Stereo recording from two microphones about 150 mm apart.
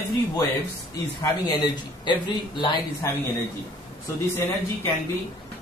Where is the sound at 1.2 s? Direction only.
25° left (ahead or behind).